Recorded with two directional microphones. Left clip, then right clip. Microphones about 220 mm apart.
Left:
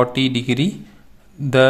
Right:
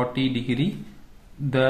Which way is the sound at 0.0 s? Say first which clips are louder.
Left 7 dB; 45° left (ahead or behind).